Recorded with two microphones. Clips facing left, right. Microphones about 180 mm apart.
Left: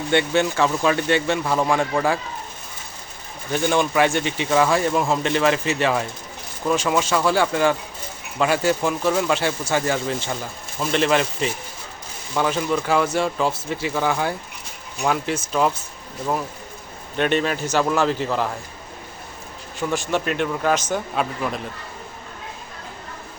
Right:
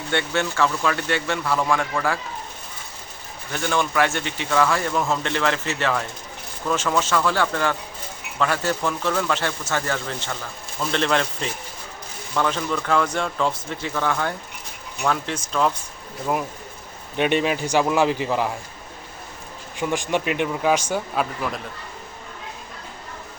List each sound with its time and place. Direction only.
0.1 s a man's voice: 15° left (ahead or behind)
3.5 s a man's voice: 15° left (ahead or behind)
17.2 s a man's voice: 15° right (ahead or behind)
19.9 s a man's voice: 15° right (ahead or behind)